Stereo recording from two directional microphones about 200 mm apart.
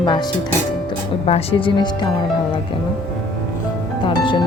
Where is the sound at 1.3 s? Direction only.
30° left (ahead or behind).